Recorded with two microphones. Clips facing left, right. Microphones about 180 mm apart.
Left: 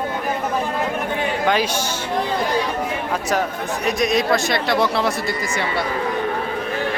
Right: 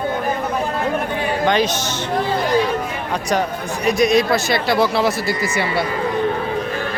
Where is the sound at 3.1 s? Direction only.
5° left (ahead or behind).